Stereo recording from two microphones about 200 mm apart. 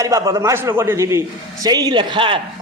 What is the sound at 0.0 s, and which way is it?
A man's voice, 15° right (ahead or behind).